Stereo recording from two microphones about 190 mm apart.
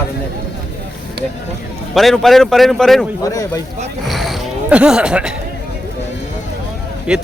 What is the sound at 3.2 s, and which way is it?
Speech, 20° left (ahead or behind).